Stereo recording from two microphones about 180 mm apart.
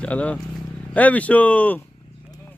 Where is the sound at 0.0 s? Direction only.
5° left (ahead or behind).